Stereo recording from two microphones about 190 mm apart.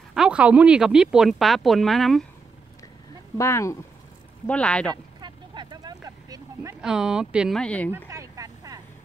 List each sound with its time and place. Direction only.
0.1 s speech: 5° right (ahead or behind)
3.3 s speech: 15° left (ahead or behind)
4.9 s vehicle: 25° right (ahead or behind)
6.8 s speech: 5° right (ahead or behind)
8.1 s vehicle: 15° right (ahead or behind)